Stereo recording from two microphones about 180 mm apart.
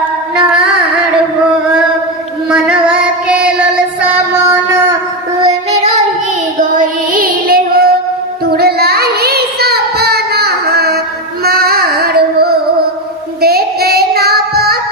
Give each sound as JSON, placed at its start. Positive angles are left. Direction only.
{"t": 2.5, "sound": "child singing", "side_deg": -5}
{"t": 6.6, "sound": "child singing", "side_deg": -50}
{"t": 11.4, "sound": "music", "side_deg": -60}
{"t": 13.4, "sound": "child singing", "side_deg": -60}